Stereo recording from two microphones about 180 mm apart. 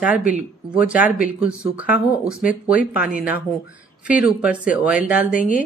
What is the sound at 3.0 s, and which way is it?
Speech, 55° left (ahead or behind).